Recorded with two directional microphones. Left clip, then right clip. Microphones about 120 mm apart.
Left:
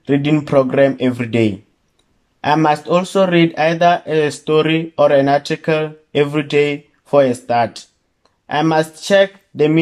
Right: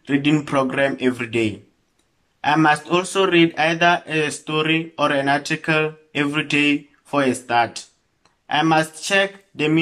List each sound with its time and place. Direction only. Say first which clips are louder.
0.0 s speech: left 3 dB; 40° left (ahead or behind)